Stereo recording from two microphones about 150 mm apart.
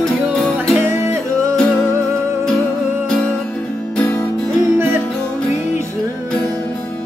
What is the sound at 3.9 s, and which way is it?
Music, 10° left (ahead or behind).